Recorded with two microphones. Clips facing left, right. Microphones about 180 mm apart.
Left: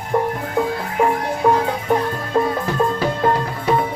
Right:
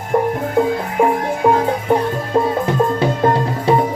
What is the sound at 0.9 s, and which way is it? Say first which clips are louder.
Music: right 1 dB; 15° right (ahead or behind).